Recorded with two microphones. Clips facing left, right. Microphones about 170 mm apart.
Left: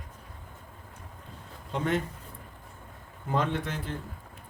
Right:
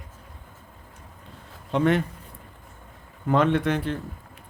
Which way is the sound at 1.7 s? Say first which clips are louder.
Right 7 dB; 70° right (ahead or behind).